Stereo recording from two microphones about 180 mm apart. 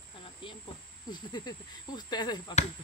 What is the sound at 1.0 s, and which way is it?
Speech, 25° left (ahead or behind).